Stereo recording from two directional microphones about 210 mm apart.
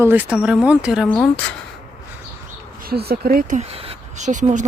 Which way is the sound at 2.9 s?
45° right (ahead or behind).